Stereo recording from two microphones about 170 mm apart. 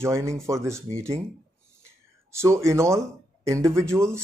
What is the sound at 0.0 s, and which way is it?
Speech, 15° right (ahead or behind).